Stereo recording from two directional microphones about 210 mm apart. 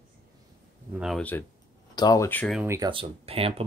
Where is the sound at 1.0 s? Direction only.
5° left (ahead or behind).